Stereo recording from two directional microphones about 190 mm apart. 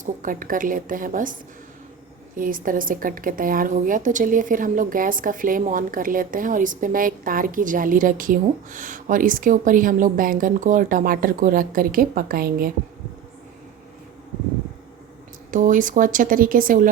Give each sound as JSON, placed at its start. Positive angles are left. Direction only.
{"t": 0.0, "sound": "speech", "side_deg": -45}
{"t": 15.5, "sound": "speech", "side_deg": -45}